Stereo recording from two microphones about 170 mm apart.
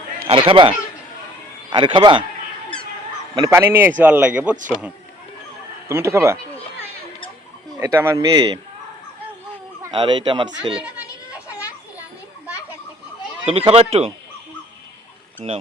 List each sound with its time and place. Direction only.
0.3 s speech: 30° right (ahead or behind)
1.7 s speech: 30° right (ahead or behind)
3.3 s speech: 20° right (ahead or behind)
5.9 s a sound: 15° right (ahead or behind)
7.8 s speech: 15° right (ahead or behind)
9.9 s speech: 25° right (ahead or behind)
10.8 s speech: 10° right (ahead or behind)
13.5 s speech: 35° right (ahead or behind)